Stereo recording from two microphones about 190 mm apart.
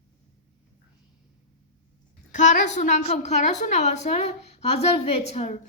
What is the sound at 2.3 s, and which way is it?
A woman's voice, 40° left (ahead or behind).